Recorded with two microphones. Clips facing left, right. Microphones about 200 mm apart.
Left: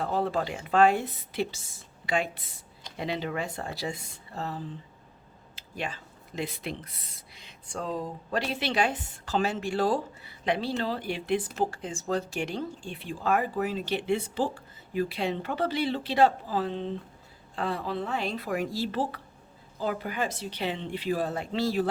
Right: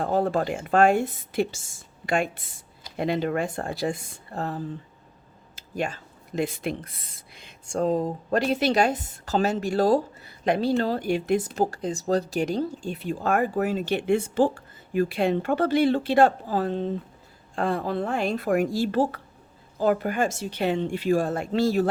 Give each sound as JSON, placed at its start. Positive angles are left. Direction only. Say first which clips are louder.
{"t": 0.0, "sound": "speech", "louder": "right 5 dB", "side_deg": -45}